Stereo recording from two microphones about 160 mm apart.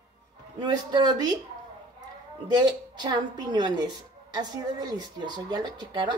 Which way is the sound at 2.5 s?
25° right (ahead or behind).